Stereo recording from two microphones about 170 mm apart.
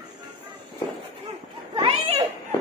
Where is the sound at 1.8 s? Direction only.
35° right (ahead or behind).